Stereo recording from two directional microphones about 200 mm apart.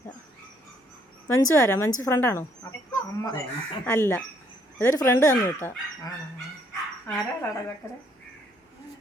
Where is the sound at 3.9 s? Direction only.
10° left (ahead or behind).